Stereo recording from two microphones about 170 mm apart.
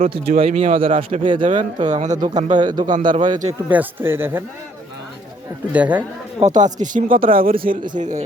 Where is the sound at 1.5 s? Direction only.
45° right (ahead or behind).